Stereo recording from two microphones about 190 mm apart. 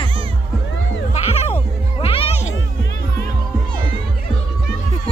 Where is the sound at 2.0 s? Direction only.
30° left (ahead or behind).